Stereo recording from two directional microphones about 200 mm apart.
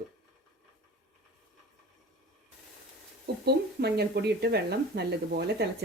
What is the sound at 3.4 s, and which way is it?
Speech, 55° right (ahead or behind).